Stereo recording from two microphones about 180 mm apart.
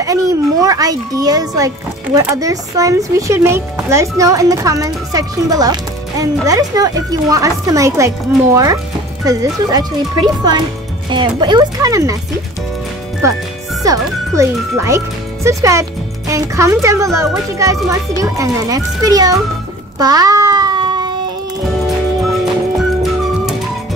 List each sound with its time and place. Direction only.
0.0 s speech: 20° right (ahead or behind)
9.2 s speech: 20° right (ahead or behind)
13.9 s a child's voice: 20° right (ahead or behind)
20.0 s a sound: 20° right (ahead or behind)
21.8 s music: centre (ahead or behind)